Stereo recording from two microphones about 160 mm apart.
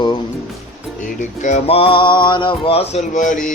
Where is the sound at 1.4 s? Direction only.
50° left (ahead or behind).